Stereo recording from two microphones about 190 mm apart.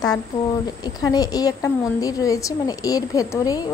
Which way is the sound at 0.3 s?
35° left (ahead or behind).